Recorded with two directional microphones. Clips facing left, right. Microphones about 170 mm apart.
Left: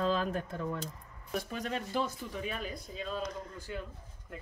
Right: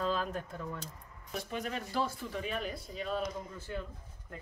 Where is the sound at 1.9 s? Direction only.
20° left (ahead or behind).